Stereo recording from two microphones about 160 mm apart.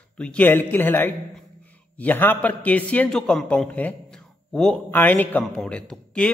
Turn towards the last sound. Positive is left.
turn(degrees=5)  # may be behind; listen again after turning